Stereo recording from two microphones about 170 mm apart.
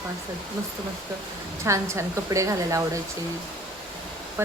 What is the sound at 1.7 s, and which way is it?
A woman's voice, 15° right (ahead or behind).